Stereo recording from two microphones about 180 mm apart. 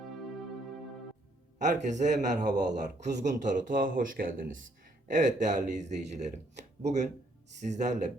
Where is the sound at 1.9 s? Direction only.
40° right (ahead or behind).